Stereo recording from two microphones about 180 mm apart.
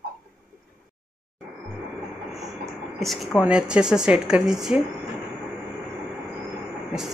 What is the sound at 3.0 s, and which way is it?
Speech, centre (ahead or behind).